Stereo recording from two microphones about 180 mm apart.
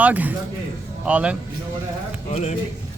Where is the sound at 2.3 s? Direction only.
40° left (ahead or behind).